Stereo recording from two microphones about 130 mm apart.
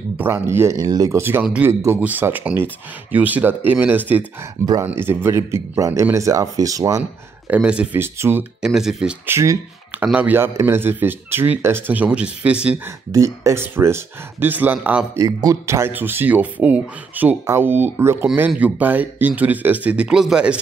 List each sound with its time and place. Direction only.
0.2 s speech: 20° right (ahead or behind)
7.0 s speech: 10° right (ahead or behind)
8.6 s speech: 5° right (ahead or behind)
9.2 s speech: 20° right (ahead or behind)
13.1 s speech: 25° right (ahead or behind)
15.1 s speech: 25° right (ahead or behind); by 20.5 s 5° right (ahead or behind)